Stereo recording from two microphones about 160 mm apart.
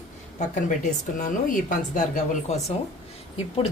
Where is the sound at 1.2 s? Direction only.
55° left (ahead or behind).